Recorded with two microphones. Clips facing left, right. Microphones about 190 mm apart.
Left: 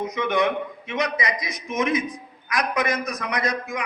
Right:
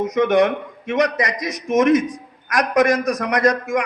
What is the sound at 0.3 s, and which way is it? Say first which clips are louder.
A man's voice: right 6 dB; 80° right.